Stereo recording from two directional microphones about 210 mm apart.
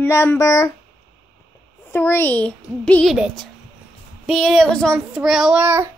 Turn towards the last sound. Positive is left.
turn(degrees=-10)  # may be behind; listen again after turning